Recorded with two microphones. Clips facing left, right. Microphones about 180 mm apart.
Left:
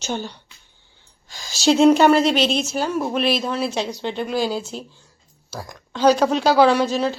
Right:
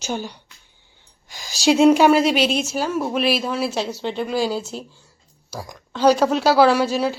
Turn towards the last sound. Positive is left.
turn(degrees=-10)  # may be behind; listen again after turning